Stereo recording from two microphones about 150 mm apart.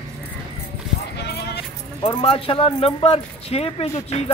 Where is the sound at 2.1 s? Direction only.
35° left (ahead or behind).